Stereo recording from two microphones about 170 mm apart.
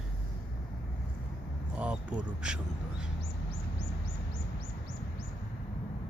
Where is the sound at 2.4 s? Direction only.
5° right (ahead or behind).